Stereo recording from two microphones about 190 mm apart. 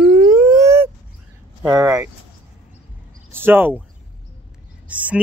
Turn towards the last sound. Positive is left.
turn(degrees=-5)  # may be behind; listen again after turning